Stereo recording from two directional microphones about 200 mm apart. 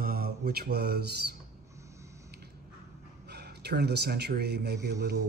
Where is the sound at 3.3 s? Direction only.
55° right (ahead or behind).